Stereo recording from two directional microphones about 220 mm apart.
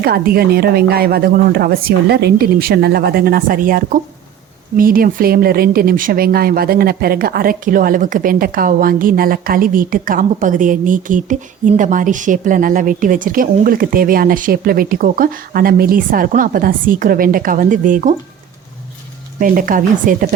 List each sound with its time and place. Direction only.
0.0 s speech: 45° right (ahead or behind)
19.4 s speech: 40° right (ahead or behind)